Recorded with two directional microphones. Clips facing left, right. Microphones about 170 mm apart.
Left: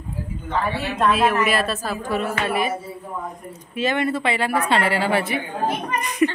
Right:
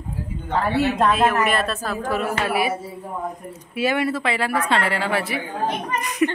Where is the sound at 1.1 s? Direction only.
Centre (ahead or behind).